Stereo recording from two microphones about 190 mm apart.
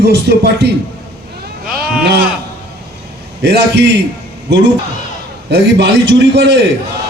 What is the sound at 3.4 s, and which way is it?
Speech, 65° right (ahead or behind).